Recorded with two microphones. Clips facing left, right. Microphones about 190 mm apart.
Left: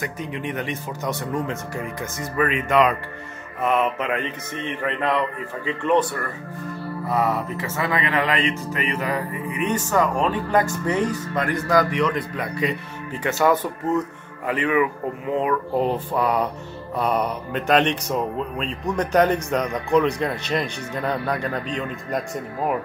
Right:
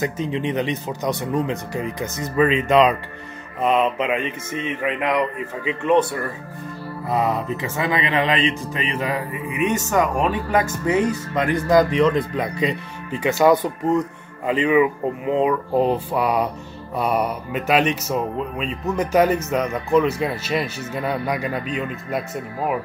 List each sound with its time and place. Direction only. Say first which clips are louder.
0.0 s speech: right 6 dB; 25° right (ahead or behind); by 22.8 s 5° right (ahead or behind)